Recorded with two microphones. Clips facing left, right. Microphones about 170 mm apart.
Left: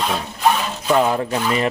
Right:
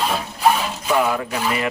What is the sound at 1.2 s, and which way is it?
Speech, 30° left (ahead or behind).